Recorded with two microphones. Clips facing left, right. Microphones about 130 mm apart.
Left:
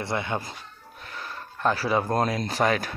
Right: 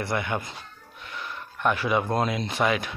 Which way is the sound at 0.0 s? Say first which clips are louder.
Right 1 dB; 25° left (ahead or behind).